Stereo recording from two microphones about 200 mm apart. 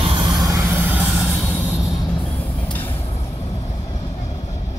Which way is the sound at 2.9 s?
30° left (ahead or behind).